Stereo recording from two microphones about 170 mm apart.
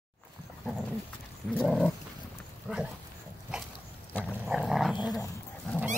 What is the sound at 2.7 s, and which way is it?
Dog, 5° right (ahead or behind).